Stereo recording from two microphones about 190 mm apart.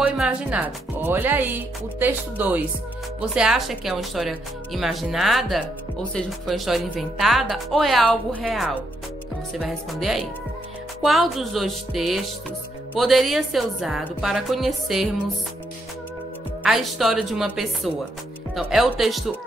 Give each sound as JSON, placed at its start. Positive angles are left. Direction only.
{"t": 0.0, "sound": "speech", "side_deg": -5}
{"t": 16.6, "sound": "speech", "side_deg": 0}